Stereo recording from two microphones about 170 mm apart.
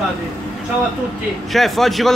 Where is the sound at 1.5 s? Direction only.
Centre (ahead or behind).